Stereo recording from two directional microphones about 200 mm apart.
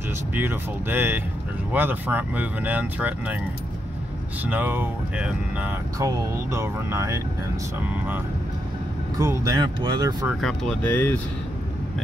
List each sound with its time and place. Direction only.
0.3 s speech: 10° right (ahead or behind)
4.5 s speech: 10° right (ahead or behind)
9.2 s speech: 15° right (ahead or behind)
10.4 s speech: 5° left (ahead or behind)